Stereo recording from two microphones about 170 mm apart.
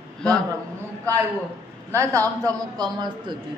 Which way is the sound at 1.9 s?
15° right (ahead or behind).